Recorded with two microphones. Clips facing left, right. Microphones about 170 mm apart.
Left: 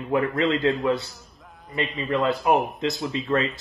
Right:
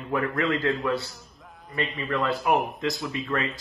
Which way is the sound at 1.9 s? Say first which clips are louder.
Left 4 dB; 20° left (ahead or behind).